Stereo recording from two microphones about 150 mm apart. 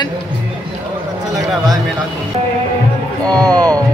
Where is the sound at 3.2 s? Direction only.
25° right (ahead or behind).